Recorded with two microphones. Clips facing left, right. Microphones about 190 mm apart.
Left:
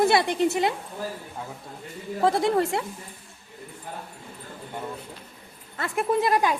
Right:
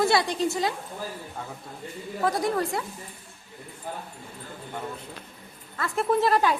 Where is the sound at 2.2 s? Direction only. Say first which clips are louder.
Left 4 dB; 25° left (ahead or behind).